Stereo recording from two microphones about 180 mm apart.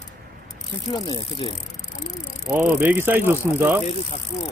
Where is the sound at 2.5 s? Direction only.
10° right (ahead or behind).